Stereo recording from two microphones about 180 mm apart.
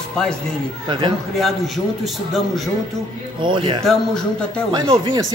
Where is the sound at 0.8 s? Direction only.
25° right (ahead or behind).